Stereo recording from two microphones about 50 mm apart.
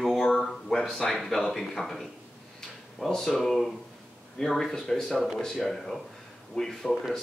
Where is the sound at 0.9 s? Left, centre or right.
Centre.